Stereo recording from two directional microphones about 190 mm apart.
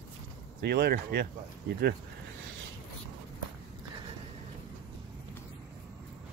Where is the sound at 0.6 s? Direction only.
60° right (ahead or behind).